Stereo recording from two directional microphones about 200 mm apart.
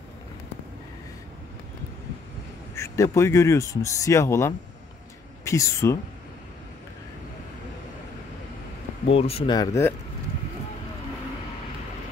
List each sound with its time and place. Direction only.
2.7 s a man's voice: 15° left (ahead or behind)
9.0 s speech: 30° left (ahead or behind)